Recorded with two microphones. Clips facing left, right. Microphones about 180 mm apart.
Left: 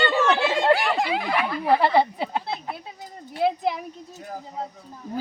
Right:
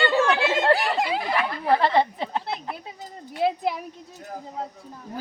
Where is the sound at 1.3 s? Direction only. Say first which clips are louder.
Left 1 dB; 15° left (ahead or behind).